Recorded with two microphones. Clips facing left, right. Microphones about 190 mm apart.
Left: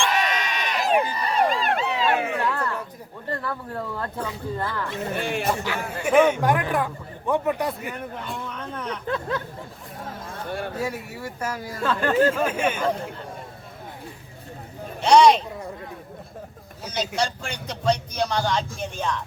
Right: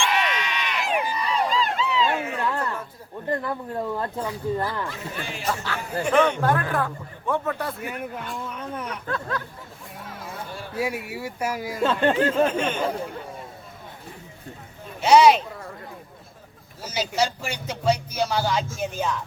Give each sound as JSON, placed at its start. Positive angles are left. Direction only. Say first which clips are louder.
{"t": 0.0, "sound": "bleat", "louder": "left 1 dB", "side_deg": 45}
{"t": 1.3, "sound": "a sound", "louder": "left 2 dB", "side_deg": 60}
{"t": 2.2, "sound": "a sound", "louder": "left 2 dB", "side_deg": 20}
{"t": 2.5, "sound": "a sound", "louder": "even", "side_deg": -20}
{"t": 3.2, "sound": "speech", "louder": "right 3 dB", "side_deg": -20}
{"t": 4.9, "sound": "speech", "louder": "left 7 dB", "side_deg": 55}
{"t": 5.5, "sound": "a man's voice", "louder": "left 2 dB", "side_deg": 15}
{"t": 8.4, "sound": "speech", "louder": "right 1 dB", "side_deg": -10}
{"t": 9.0, "sound": "speech", "louder": "left 3 dB", "side_deg": 20}
{"t": 10.8, "sound": "speech", "louder": "right 2 dB", "side_deg": -10}
{"t": 11.8, "sound": "speech", "louder": "even", "side_deg": -25}
{"t": 12.5, "sound": "a man's voice", "louder": "even", "side_deg": 10}
{"t": 15.0, "sound": "speech", "louder": "even", "side_deg": -5}
{"t": 16.8, "sound": "speech", "louder": "right 1 dB", "side_deg": -5}